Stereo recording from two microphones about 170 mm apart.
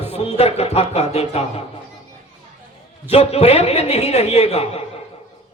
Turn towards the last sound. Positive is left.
turn(degrees=40)  # may be behind; listen again after turning